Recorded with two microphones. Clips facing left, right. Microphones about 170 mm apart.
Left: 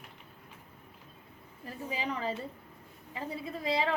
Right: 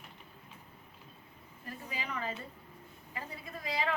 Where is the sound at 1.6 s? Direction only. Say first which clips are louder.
Left 6 dB; 30° left (ahead or behind).